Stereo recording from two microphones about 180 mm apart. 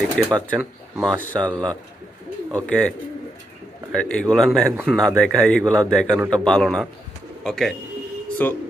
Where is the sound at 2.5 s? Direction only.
5° left (ahead or behind).